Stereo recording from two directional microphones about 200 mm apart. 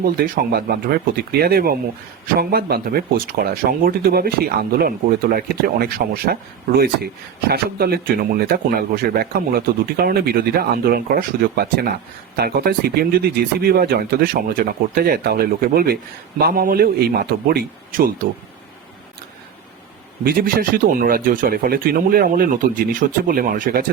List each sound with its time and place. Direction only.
0.0 s speech: 50° right (ahead or behind)
20.2 s speech: 45° right (ahead or behind)